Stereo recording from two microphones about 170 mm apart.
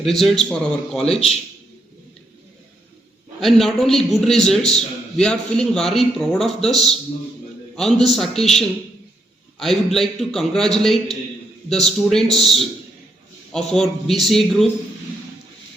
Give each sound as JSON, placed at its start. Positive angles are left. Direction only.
{"t": 0.0, "sound": "a man's voice", "side_deg": 0}
{"t": 3.4, "sound": "a man's voice", "side_deg": 0}